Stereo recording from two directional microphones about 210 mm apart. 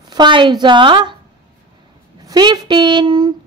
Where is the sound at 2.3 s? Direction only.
20° right (ahead or behind).